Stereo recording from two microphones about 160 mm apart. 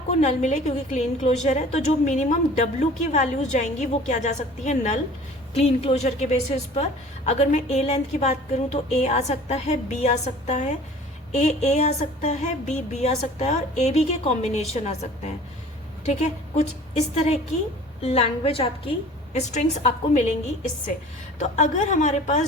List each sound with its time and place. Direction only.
0.1 s a woman's voice: 45° left (ahead or behind)